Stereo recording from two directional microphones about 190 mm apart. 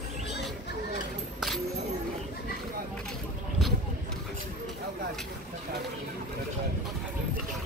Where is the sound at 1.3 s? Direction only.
Centre (ahead or behind).